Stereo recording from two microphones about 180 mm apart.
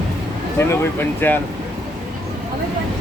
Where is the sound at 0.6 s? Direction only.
15° left (ahead or behind).